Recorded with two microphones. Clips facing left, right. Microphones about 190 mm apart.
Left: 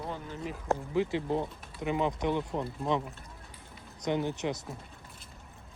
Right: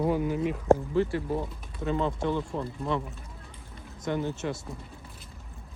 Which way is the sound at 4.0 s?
20° left (ahead or behind).